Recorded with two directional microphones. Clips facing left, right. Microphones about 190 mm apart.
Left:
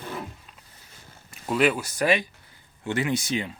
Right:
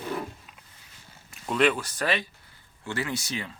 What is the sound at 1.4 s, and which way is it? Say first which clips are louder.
Speech: left 1 dB; 5° left (ahead or behind).